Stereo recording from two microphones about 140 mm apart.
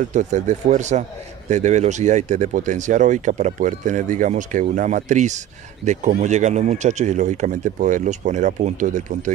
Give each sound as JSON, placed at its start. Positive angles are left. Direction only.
{"t": 0.1, "sound": "speech", "side_deg": -60}